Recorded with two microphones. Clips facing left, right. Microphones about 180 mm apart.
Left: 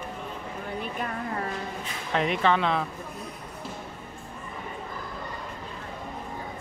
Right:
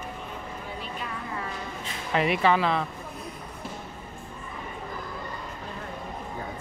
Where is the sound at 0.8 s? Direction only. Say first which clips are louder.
Left 4 dB; 50° left (ahead or behind).